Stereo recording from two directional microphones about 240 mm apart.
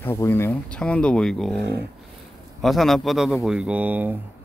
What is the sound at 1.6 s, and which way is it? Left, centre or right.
Speech, right.